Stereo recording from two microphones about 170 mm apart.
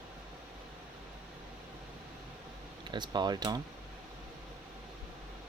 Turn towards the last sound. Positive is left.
turn(degrees=-25)  # may be behind; listen again after turning